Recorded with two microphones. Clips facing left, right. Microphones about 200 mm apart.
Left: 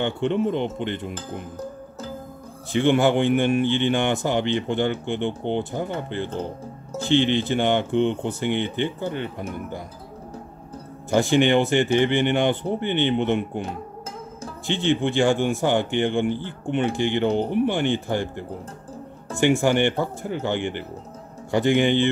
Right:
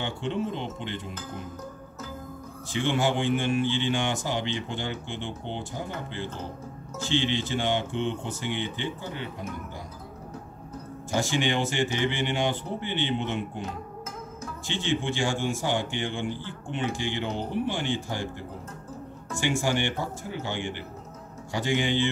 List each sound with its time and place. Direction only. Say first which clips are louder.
0.0 s a man's voice: left 7 dB; 60° left (ahead or behind)
2.7 s a man's voice: left 7 dB; 60° left (ahead or behind)
11.1 s a man's voice: left 8 dB; 60° left (ahead or behind)
14.7 s a man's voice: left 7 dB; 60° left (ahead or behind)
19.3 s a man's voice: left 8 dB; 60° left (ahead or behind)